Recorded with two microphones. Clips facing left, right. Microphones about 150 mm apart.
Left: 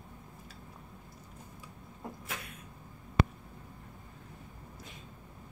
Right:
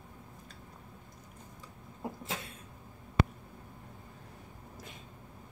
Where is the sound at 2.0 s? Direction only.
25° right (ahead or behind).